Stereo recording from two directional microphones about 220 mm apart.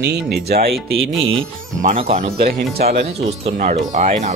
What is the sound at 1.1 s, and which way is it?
Music, 65° right (ahead or behind).